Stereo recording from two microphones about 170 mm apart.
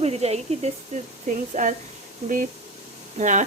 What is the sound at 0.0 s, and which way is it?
A woman's voice, 40° right (ahead or behind).